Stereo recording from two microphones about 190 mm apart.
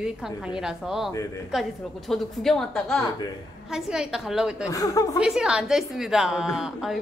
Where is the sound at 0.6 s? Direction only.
Centre (ahead or behind).